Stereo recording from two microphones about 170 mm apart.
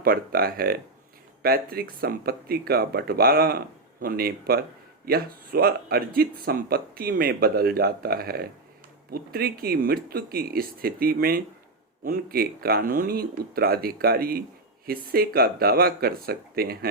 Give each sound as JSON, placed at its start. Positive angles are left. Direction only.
{"t": 0.0, "sound": "speech", "side_deg": -60}